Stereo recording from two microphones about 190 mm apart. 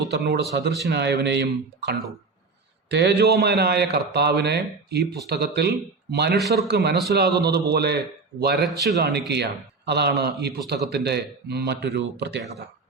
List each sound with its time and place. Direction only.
0.0 s a man's voice: 60° right (ahead or behind)